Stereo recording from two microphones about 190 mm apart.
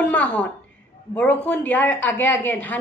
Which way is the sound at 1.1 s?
10° left (ahead or behind).